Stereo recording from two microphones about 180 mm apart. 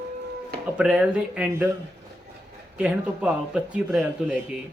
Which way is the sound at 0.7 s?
5° right (ahead or behind).